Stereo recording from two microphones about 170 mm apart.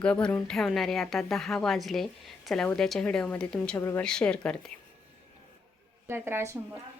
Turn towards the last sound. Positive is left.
turn(degrees=-15)  # may be behind; listen again after turning